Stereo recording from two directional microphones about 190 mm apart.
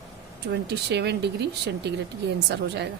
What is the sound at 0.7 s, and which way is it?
A woman's voice, 60° right (ahead or behind).